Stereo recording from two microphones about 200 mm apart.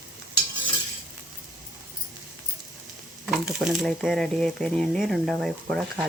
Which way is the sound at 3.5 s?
Centre (ahead or behind).